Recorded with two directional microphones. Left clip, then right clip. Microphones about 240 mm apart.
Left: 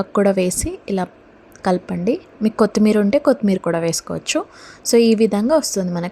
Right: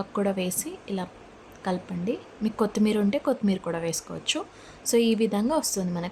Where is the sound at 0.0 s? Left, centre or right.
Left.